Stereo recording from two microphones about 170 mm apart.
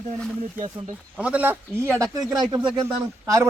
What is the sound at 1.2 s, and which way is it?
A man's voice, 10° right (ahead or behind).